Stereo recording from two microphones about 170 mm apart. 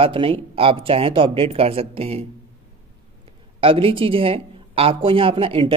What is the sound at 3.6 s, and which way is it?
Speech, 30° right (ahead or behind).